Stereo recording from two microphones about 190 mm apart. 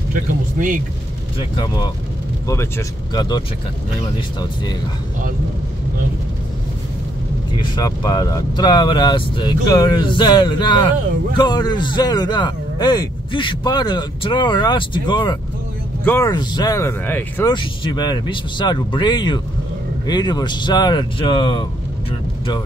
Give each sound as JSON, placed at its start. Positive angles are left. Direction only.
{"t": 0.1, "sound": "speech", "side_deg": -45}
{"t": 2.4, "sound": "a man's voice", "side_deg": 15}
{"t": 7.5, "sound": "a man's voice", "side_deg": 20}
{"t": 17.5, "sound": "a man's voice", "side_deg": 25}